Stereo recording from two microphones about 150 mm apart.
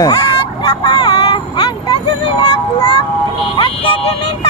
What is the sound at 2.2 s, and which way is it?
Speech, 35° left (ahead or behind).